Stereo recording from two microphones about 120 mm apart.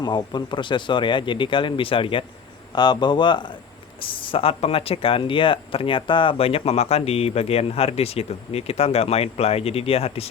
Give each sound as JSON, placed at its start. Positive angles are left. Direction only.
{"t": 0.0, "sound": "speech", "side_deg": 40}